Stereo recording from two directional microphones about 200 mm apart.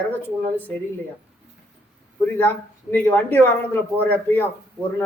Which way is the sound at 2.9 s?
10° left (ahead or behind).